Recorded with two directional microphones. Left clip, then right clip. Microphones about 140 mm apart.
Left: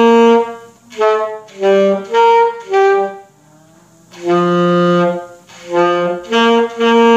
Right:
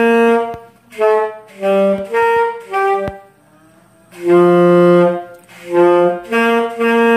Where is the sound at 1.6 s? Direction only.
15° left (ahead or behind).